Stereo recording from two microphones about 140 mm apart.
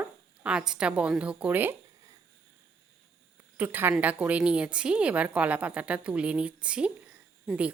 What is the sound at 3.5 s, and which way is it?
A woman's voice, 15° right (ahead or behind).